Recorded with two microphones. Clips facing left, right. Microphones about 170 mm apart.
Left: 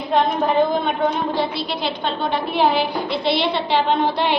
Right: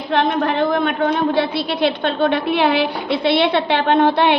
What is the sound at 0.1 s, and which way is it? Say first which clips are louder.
A woman's voice: right 1 dB; 75° right (ahead or behind).